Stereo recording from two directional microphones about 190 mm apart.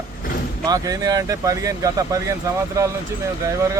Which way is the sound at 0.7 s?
20° right (ahead or behind).